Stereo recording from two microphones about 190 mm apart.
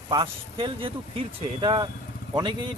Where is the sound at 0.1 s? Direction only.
25° right (ahead or behind).